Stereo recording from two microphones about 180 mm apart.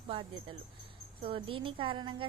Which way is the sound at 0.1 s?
30° right (ahead or behind).